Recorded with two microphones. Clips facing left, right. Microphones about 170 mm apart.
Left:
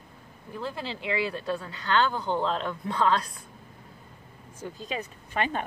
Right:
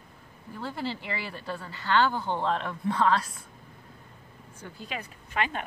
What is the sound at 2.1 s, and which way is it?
Speech, 5° right (ahead or behind).